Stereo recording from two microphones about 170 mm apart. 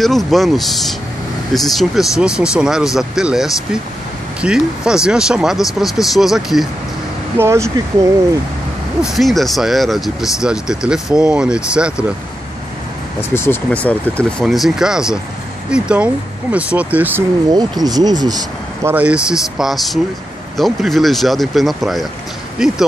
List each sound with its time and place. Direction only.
0.0 s speech: centre (ahead or behind)
7.3 s speech: 15° right (ahead or behind)
9.0 s speech: centre (ahead or behind)
13.3 s speech: 15° left (ahead or behind); by 17.2 s 10° right (ahead or behind)
17.5 s speech: 25° right (ahead or behind)
18.9 s speech: 10° right (ahead or behind)